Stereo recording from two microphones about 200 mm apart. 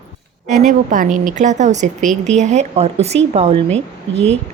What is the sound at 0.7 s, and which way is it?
A woman's voice, 40° right (ahead or behind).